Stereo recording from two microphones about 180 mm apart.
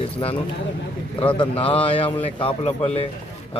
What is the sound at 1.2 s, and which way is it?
Speech, 30° left (ahead or behind).